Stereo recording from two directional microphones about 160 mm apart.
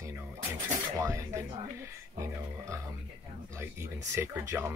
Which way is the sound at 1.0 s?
20° right (ahead or behind).